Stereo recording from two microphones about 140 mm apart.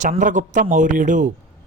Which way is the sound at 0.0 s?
65° right (ahead or behind).